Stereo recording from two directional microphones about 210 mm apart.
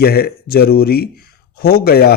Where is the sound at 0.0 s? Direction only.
45° left (ahead or behind).